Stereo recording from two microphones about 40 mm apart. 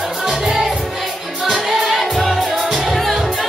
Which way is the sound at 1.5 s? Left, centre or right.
Centre.